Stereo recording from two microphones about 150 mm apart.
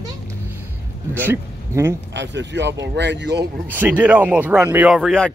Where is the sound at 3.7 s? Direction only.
10° right (ahead or behind).